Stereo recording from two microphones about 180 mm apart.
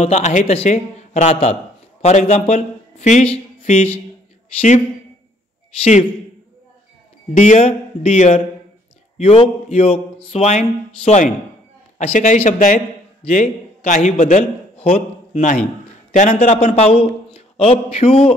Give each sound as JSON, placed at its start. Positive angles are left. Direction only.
{"t": 0.0, "sound": "a man's voice", "side_deg": 40}
{"t": 7.3, "sound": "a man's voice", "side_deg": 40}
{"t": 14.8, "sound": "a sound", "side_deg": 35}
{"t": 16.1, "sound": "a man's voice", "side_deg": 40}